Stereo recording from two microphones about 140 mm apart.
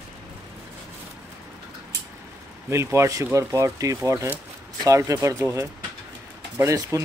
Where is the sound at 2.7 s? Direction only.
20° right (ahead or behind).